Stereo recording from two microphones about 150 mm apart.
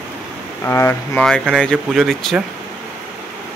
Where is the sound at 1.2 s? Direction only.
5° left (ahead or behind).